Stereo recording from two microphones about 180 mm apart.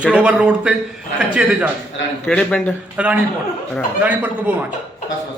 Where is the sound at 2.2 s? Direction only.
5° left (ahead or behind).